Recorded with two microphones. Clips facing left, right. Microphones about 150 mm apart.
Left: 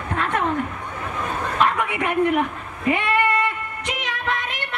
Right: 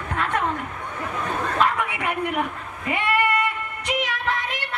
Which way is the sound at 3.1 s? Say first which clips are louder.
Left 1 dB; 25° left (ahead or behind).